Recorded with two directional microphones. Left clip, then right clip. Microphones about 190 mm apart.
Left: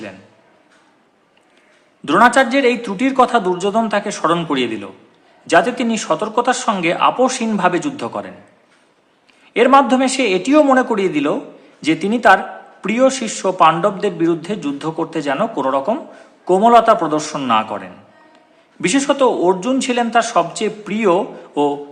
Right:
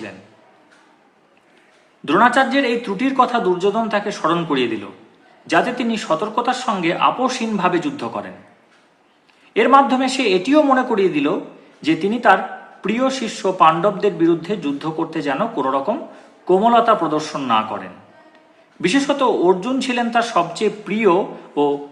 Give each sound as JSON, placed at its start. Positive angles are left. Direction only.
{"t": 2.0, "sound": "speech", "side_deg": 20}
{"t": 9.5, "sound": "speech", "side_deg": 20}